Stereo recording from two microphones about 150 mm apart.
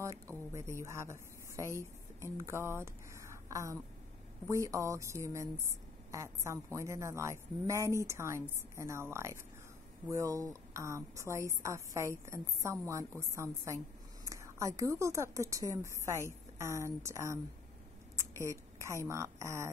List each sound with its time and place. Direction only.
0.0 s a woman's voice: 20° right (ahead or behind)
18.4 s a woman's voice: 20° right (ahead or behind)